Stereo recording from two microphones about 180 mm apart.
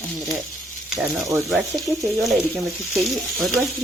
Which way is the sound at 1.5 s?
Centre (ahead or behind).